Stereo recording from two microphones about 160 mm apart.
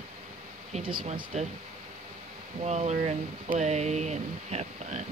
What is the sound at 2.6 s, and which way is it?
Speech, 45° right (ahead or behind).